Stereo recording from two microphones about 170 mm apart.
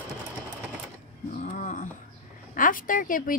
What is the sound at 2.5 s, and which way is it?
Speech, 55° left (ahead or behind).